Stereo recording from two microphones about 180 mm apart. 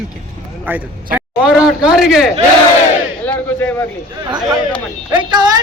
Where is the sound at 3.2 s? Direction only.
10° left (ahead or behind).